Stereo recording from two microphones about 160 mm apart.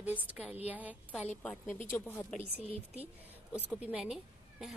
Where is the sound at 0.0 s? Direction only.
10° right (ahead or behind).